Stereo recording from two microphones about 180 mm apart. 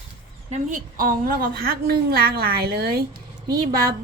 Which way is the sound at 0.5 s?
45° right (ahead or behind).